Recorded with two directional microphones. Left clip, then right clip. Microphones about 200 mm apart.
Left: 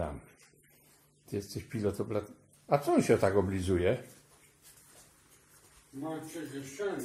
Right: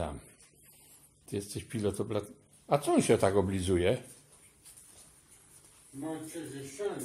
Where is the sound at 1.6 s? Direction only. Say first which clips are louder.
Even; 10° right (ahead or behind).